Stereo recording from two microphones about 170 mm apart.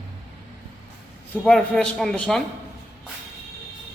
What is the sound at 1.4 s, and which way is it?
Speech, 5° left (ahead or behind).